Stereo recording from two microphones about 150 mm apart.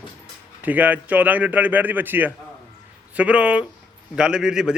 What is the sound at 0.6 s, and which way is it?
A man's voice, 10° right (ahead or behind).